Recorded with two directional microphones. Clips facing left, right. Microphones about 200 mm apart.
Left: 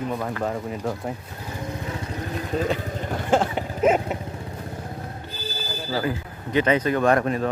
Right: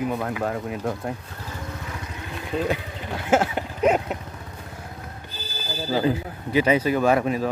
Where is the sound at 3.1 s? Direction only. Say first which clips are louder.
Right 1 dB; 5° right (ahead or behind).